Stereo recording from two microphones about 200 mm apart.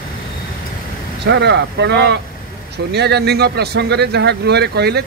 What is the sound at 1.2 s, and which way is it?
Speech, 60° right (ahead or behind).